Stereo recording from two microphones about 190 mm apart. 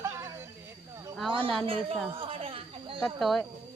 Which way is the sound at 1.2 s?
25° right (ahead or behind).